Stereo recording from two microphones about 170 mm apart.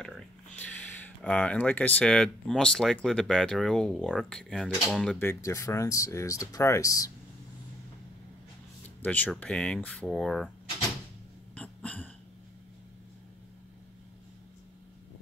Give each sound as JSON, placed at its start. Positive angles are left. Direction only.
{"t": 0.0, "sound": "speech", "side_deg": 5}
{"t": 5.2, "sound": "speech", "side_deg": 20}
{"t": 8.8, "sound": "speech", "side_deg": 10}
{"t": 11.5, "sound": "burping", "side_deg": 10}